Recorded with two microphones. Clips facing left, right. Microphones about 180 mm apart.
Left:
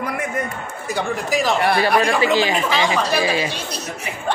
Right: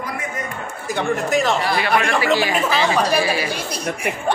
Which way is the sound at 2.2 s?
20° left (ahead or behind).